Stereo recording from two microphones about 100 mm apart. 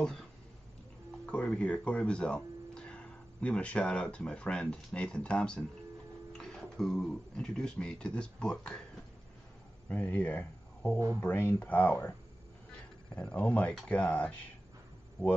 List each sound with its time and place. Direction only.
0.0 s a sound: 5° left (ahead or behind)
1.2 s speech: 10° left (ahead or behind)
9.8 s speech: 15° left (ahead or behind)
13.1 s speech: 15° left (ahead or behind)